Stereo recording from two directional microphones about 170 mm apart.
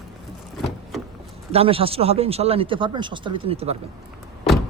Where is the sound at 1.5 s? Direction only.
35° right (ahead or behind).